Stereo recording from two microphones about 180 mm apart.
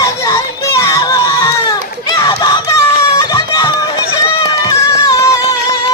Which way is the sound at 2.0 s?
20° left (ahead or behind).